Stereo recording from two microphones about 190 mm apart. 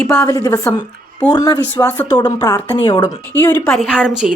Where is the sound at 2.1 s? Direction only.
20° left (ahead or behind).